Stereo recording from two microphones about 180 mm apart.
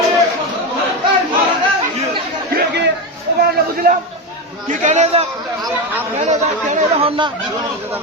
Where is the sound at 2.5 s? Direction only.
70° right (ahead or behind).